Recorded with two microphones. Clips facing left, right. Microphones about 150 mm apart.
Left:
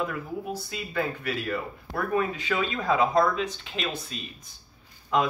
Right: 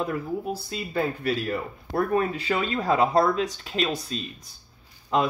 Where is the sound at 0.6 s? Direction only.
35° right (ahead or behind).